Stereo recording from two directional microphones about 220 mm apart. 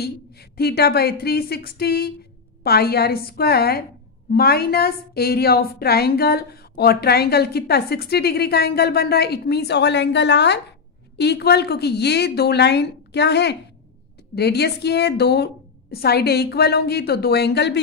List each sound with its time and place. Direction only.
0.0 s a woman's voice: 45° left (ahead or behind)